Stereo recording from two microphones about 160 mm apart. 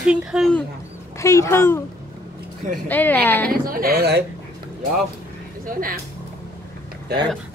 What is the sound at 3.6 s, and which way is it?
Speech, 65° right (ahead or behind).